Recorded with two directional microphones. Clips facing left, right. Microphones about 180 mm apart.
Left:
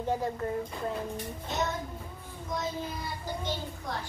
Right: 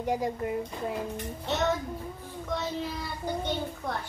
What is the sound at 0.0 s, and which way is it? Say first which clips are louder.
Speech: right 1 dB; 15° right (ahead or behind).